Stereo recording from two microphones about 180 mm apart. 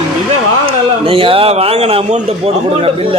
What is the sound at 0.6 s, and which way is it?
A man's voice, 30° right (ahead or behind).